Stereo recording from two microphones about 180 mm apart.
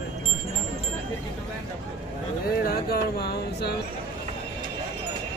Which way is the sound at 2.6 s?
60° left (ahead or behind).